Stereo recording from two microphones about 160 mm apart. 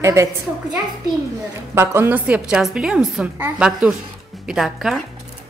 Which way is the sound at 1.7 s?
15° right (ahead or behind).